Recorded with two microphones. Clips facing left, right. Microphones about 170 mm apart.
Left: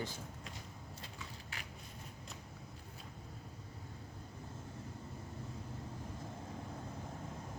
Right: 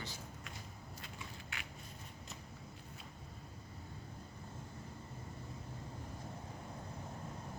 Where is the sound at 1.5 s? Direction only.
35° left (ahead or behind).